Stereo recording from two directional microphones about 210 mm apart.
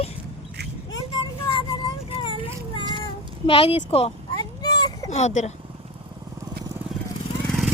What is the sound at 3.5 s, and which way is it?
Speech, 25° left (ahead or behind).